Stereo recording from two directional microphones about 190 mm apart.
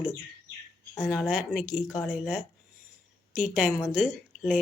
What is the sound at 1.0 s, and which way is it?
A woman's voice, 5° right (ahead or behind).